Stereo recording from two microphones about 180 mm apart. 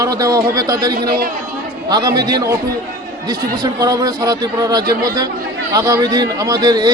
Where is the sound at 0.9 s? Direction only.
55° right (ahead or behind).